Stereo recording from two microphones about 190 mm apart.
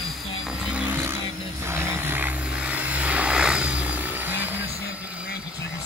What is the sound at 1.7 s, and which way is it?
Vehicle, 10° right (ahead or behind).